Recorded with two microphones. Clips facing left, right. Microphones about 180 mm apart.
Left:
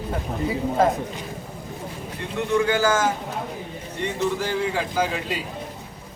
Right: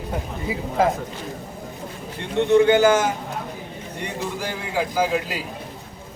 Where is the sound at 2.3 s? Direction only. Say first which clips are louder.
Right 6 dB; 25° right (ahead or behind).